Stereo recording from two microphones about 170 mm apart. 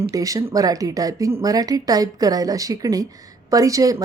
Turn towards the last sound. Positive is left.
turn(degrees=-20)  # may be behind; listen again after turning